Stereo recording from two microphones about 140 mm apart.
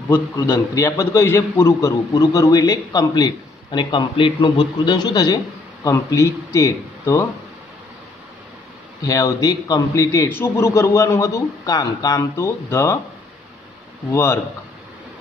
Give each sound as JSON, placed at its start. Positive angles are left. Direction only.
{"t": 0.1, "sound": "a man's voice", "side_deg": 20}
{"t": 9.0, "sound": "a man's voice", "side_deg": 25}
{"t": 14.1, "sound": "a man's voice", "side_deg": 15}